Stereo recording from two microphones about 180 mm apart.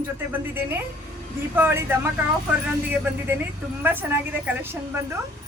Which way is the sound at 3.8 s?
10° right (ahead or behind).